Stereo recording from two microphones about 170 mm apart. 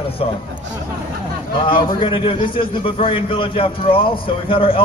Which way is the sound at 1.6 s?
30° left (ahead or behind).